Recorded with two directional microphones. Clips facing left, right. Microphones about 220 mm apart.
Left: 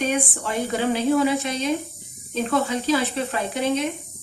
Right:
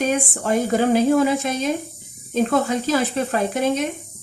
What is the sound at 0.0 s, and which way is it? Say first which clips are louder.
A woman's voice: right 3 dB; 45° right (ahead or behind).